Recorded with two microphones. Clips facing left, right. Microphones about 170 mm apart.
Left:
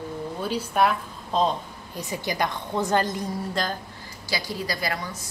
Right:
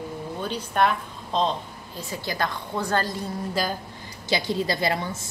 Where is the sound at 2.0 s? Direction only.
15° left (ahead or behind).